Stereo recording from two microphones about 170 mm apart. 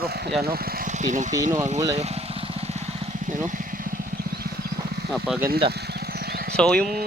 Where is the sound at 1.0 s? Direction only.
45° right (ahead or behind).